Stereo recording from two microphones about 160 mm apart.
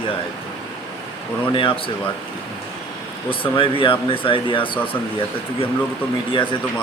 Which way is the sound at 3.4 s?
35° left (ahead or behind).